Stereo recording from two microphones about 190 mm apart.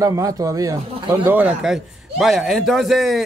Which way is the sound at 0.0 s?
15° right (ahead or behind).